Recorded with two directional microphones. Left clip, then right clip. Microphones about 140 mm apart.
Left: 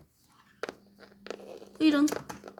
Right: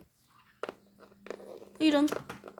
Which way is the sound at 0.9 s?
Centre (ahead or behind).